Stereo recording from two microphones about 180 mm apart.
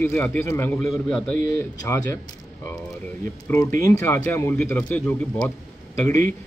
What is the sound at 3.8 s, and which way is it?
A man's voice, 15° left (ahead or behind).